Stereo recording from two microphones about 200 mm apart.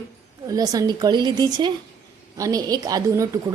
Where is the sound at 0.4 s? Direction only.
20° right (ahead or behind).